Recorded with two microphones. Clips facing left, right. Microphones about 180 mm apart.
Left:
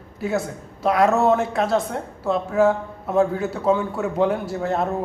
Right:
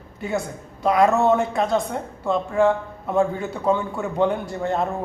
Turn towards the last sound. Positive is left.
turn(degrees=5)  # may be behind; listen again after turning